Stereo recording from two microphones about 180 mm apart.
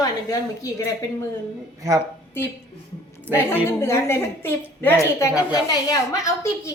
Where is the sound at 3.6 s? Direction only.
15° left (ahead or behind).